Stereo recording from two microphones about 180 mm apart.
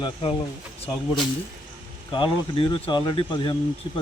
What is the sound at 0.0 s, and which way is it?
Speech, 30° left (ahead or behind).